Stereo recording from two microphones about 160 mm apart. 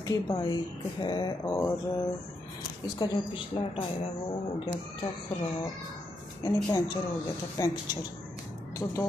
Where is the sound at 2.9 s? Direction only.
25° left (ahead or behind).